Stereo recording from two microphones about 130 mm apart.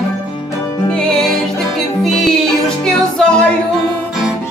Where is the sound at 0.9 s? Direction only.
5° left (ahead or behind).